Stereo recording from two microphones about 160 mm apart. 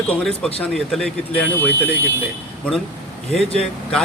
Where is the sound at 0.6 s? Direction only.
5° left (ahead or behind).